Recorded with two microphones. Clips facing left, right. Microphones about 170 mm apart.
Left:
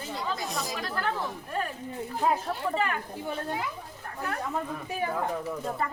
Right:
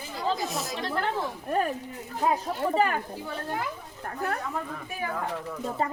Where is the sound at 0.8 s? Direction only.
25° right (ahead or behind).